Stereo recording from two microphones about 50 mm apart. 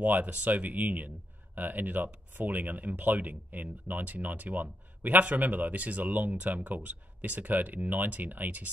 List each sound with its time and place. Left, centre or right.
0.0 s speech: right